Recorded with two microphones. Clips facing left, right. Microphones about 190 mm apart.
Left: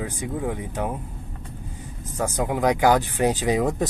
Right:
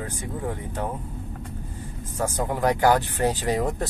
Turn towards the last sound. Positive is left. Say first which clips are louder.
# left 3 dB
turn(degrees=15)  # may be behind; listen again after turning